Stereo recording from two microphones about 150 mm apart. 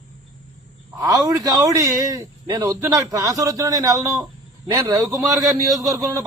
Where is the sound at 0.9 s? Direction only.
25° right (ahead or behind).